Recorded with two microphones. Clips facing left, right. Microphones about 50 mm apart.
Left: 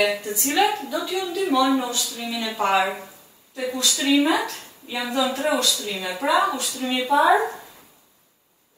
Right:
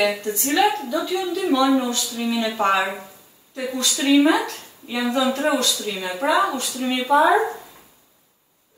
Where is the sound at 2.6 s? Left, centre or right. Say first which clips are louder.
Left 2 dB; centre.